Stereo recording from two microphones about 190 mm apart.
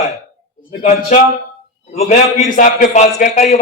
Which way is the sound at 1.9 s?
35° left (ahead or behind).